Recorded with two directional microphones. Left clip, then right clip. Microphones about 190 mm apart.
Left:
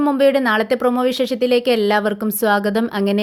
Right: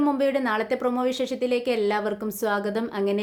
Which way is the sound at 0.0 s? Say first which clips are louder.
Left 8 dB; 40° left (ahead or behind).